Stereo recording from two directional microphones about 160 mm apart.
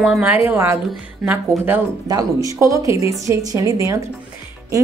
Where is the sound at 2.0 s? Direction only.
20° right (ahead or behind).